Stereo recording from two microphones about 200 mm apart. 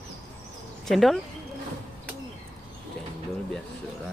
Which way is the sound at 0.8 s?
Centre (ahead or behind).